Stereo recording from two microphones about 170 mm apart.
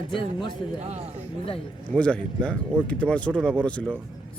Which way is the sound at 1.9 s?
5° left (ahead or behind).